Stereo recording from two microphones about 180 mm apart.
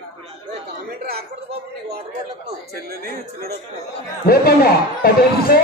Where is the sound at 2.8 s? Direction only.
60° right (ahead or behind).